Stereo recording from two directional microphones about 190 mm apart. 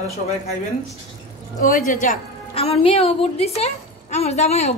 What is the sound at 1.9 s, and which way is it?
A woman's voice, 40° left (ahead or behind).